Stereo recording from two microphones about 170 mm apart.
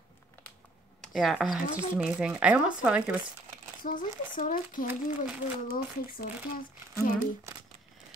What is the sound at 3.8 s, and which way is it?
Speech, 50° left (ahead or behind).